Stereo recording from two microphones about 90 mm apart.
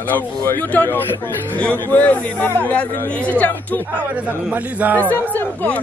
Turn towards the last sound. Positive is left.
turn(degrees=20)  # may be behind; listen again after turning